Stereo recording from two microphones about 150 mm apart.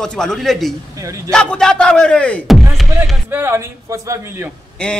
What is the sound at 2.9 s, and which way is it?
Speech, 15° right (ahead or behind).